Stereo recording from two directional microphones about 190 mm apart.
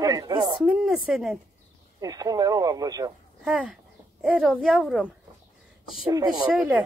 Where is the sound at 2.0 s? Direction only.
20° right (ahead or behind).